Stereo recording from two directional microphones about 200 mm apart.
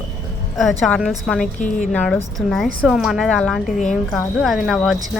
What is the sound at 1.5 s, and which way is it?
Speech, 40° left (ahead or behind).